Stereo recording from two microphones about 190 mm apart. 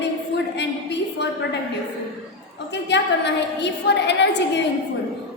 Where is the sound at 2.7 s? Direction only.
65° left (ahead or behind).